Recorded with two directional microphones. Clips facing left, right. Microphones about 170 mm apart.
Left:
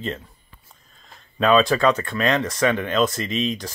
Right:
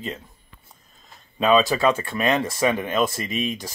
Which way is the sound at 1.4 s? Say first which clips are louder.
Left 1 dB; 5° right (ahead or behind).